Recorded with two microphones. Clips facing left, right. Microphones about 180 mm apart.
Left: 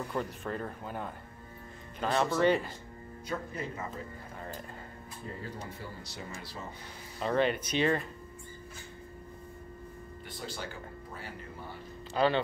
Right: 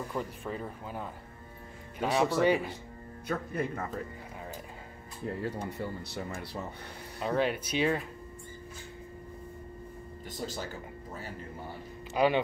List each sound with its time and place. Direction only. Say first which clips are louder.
0.1 s speech: left 1 dB; 5° right (ahead or behind)
3.3 s speech: right 4 dB; 60° right (ahead or behind)
5.4 s speech: right 7 dB; 65° right (ahead or behind)
7.2 s speech: left 1 dB; 5° right (ahead or behind)
10.3 s speech: right 3 dB; 40° right (ahead or behind)
12.1 s speech: right 1 dB; 15° right (ahead or behind)